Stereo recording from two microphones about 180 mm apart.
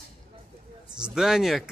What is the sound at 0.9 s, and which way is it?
Speech, 5° right (ahead or behind).